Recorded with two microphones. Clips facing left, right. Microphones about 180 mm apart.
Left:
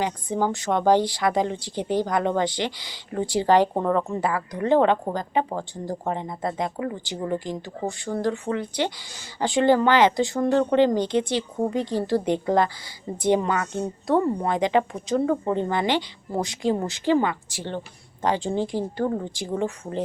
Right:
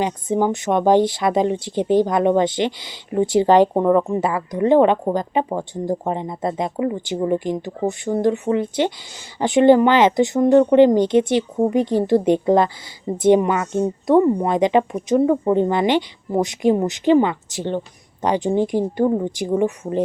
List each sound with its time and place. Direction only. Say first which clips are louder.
0.0 s speech: right 5 dB; 20° right (ahead or behind)